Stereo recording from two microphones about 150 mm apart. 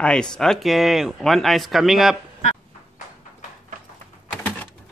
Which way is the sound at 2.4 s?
55° left (ahead or behind).